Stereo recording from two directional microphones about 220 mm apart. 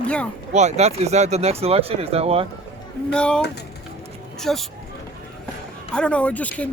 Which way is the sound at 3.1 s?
5° left (ahead or behind).